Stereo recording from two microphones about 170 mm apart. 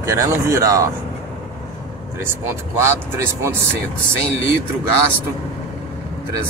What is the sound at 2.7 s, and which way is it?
Speech, 15° right (ahead or behind).